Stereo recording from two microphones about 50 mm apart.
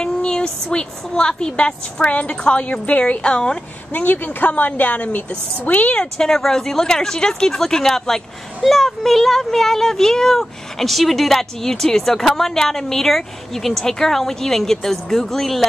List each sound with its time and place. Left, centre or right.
0.0 s a woman's voice: centre
2.0 s a woman's voice: left
3.9 s speech: left
5.9 s speech: centre